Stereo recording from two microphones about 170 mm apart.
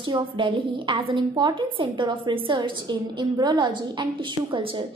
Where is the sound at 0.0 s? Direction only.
30° right (ahead or behind).